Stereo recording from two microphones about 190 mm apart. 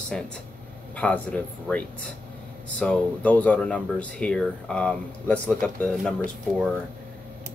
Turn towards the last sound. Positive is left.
turn(degrees=5)  # may be behind; listen again after turning